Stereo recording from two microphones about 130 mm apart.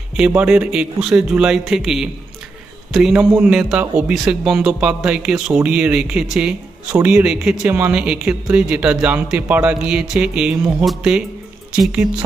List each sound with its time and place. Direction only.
0.3 s speech: 10° right (ahead or behind)